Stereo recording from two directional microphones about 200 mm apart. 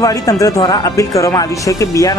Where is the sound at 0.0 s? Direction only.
15° left (ahead or behind).